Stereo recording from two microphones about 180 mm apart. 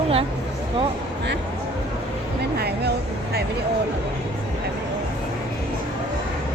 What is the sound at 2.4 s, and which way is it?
Music, 65° right (ahead or behind).